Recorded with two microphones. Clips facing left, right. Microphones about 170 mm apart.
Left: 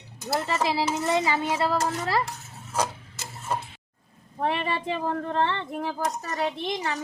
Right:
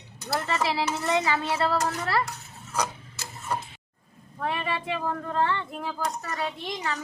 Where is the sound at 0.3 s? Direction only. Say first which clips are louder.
Left 1 dB; 20° left (ahead or behind).